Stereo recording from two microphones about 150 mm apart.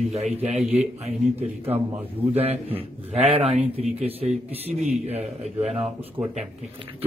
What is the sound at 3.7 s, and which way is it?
A man's voice, 40° right (ahead or behind).